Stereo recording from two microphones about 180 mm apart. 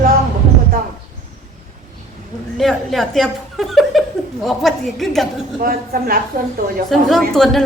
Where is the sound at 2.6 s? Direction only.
Centre (ahead or behind).